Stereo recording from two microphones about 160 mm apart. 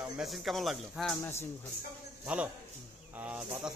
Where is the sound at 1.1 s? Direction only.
15° left (ahead or behind).